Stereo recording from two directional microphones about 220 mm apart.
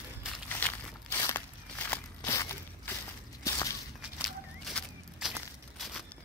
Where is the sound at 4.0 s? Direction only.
Centre (ahead or behind).